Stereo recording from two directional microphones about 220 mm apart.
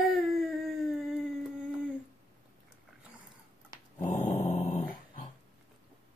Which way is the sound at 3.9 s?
35° left (ahead or behind).